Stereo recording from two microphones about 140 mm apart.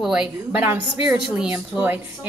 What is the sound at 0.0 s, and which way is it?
A woman's voice, 5° right (ahead or behind).